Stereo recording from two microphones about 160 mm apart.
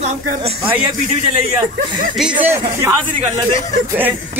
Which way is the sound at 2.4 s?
15° right (ahead or behind).